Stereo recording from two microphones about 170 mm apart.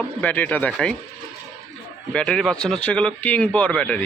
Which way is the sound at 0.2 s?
10° left (ahead or behind).